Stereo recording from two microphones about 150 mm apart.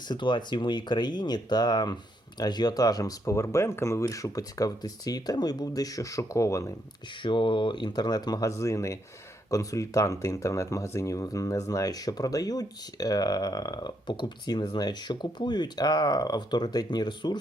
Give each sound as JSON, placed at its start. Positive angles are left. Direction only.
{"t": 0.1, "sound": "speech", "side_deg": 30}
{"t": 7.2, "sound": "speech", "side_deg": 35}